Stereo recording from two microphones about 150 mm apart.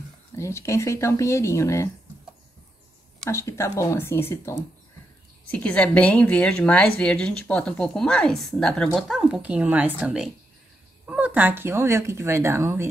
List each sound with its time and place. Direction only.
0.4 s speech: 20° left (ahead or behind)
3.3 s a woman's voice: 20° left (ahead or behind); by 12.8 s 15° right (ahead or behind)